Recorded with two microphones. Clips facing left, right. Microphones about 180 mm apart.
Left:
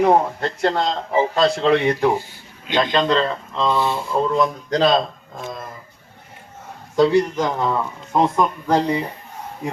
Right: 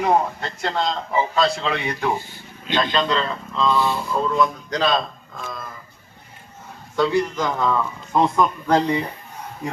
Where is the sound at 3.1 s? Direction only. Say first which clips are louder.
Left 4 dB; 30° left (ahead or behind).